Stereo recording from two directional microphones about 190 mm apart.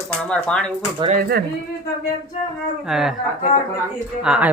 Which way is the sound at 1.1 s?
55° right (ahead or behind).